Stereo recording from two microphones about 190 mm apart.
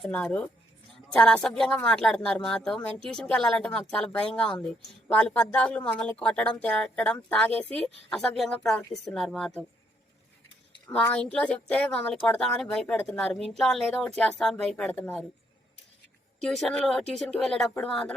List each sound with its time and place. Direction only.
0.0 s speech: 5° left (ahead or behind)
10.9 s speech: 5° left (ahead or behind)
16.4 s speech: centre (ahead or behind)